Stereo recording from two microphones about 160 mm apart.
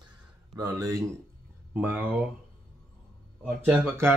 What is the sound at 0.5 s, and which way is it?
A man's voice, 20° right (ahead or behind).